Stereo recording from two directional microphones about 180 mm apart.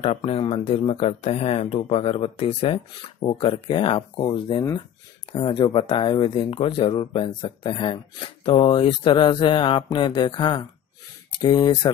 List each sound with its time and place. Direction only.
0.0 s speech: 35° left (ahead or behind)